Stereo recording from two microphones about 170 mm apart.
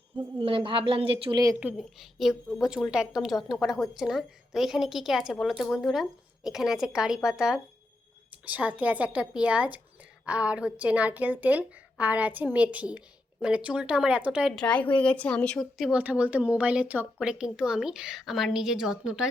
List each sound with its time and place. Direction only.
0.2 s a woman's voice: 30° right (ahead or behind)
1.5 s a woman's voice: 5° right (ahead or behind)
14.6 s a woman's voice: 10° left (ahead or behind)